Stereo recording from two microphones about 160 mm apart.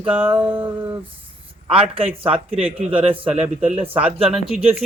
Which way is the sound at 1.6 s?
35° right (ahead or behind).